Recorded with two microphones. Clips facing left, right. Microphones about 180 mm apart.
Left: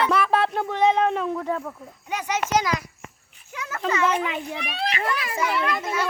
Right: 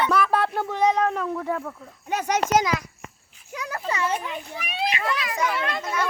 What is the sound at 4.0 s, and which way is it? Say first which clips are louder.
Speech: left 4 dB; 85° left.